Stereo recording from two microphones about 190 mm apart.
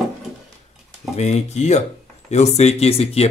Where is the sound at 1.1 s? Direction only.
35° left (ahead or behind).